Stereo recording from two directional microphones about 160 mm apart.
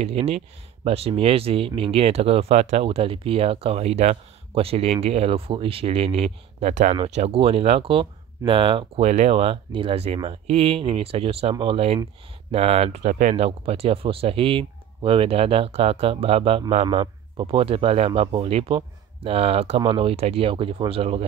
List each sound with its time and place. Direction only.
0.0 s speech: 40° right (ahead or behind)